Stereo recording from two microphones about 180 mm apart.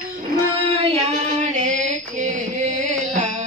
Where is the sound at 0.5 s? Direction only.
35° right (ahead or behind).